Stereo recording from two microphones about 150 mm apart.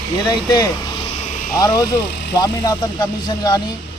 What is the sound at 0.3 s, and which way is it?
A man's voice, 30° left (ahead or behind).